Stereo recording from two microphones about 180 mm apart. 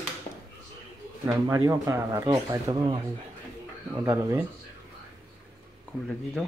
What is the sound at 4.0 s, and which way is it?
Speech, 15° right (ahead or behind).